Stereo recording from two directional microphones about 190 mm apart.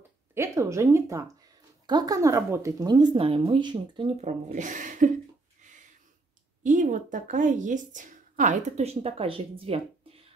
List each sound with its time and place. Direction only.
0.3 s speech: 15° right (ahead or behind); by 5.1 s 40° right (ahead or behind)
6.6 s speech: 40° right (ahead or behind)